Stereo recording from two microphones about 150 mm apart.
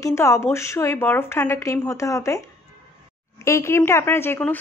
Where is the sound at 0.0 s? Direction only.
20° left (ahead or behind).